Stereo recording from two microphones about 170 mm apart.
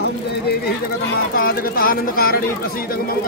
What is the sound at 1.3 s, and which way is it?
Speech, 60° left (ahead or behind).